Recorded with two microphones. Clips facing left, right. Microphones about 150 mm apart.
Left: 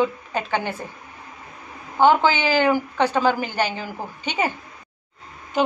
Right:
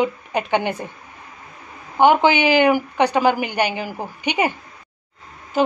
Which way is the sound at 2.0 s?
15° right (ahead or behind).